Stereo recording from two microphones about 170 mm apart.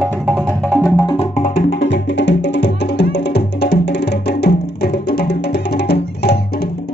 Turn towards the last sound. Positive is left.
turn(degrees=75)  # may be behind; listen again after turning